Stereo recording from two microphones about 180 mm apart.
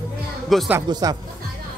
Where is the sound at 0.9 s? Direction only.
25° right (ahead or behind).